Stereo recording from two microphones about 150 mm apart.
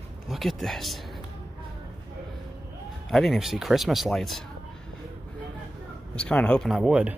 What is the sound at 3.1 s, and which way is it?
Speech, centre (ahead or behind).